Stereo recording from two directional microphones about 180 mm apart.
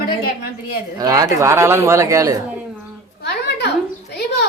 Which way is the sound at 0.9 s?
20° right (ahead or behind).